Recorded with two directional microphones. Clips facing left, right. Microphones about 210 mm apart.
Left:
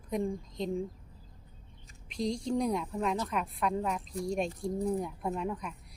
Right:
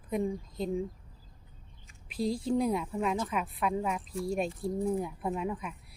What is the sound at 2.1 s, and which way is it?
A woman's voice, 5° right (ahead or behind).